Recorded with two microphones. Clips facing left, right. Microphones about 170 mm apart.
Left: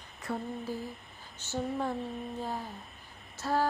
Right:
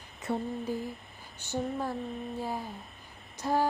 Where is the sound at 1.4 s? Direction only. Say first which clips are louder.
Even; 10° right (ahead or behind).